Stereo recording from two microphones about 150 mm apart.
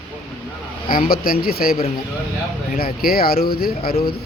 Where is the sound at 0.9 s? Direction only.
80° left.